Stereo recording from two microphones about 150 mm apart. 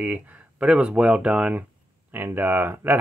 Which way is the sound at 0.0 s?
10° right (ahead or behind).